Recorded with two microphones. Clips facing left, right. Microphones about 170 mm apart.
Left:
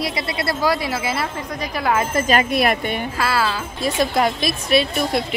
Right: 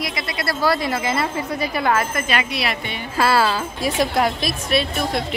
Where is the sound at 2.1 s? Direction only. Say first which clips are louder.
Left 5 dB; 40° left (ahead or behind).